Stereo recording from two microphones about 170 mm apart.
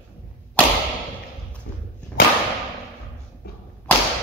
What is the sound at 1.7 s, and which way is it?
Dog, 75° left (ahead or behind).